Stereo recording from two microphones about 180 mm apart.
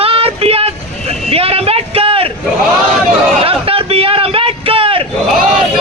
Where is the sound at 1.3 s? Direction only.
35° right (ahead or behind).